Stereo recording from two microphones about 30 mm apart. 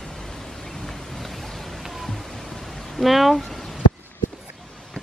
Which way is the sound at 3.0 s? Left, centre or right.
Centre.